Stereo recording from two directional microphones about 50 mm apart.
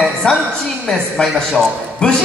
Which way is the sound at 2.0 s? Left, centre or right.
Left.